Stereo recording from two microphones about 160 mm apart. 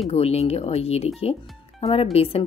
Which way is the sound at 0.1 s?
40° left (ahead or behind).